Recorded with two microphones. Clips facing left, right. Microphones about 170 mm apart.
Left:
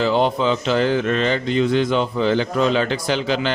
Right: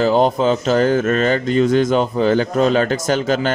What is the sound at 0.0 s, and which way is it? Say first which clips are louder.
A man's voice: right 3 dB; 45° right (ahead or behind).